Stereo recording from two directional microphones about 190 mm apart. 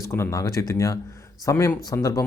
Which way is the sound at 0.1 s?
15° left (ahead or behind).